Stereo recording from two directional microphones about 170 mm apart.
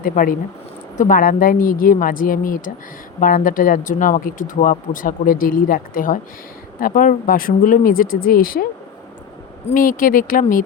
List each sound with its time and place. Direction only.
0.0 s speech: 55° left (ahead or behind)
9.7 s speech: 55° left (ahead or behind)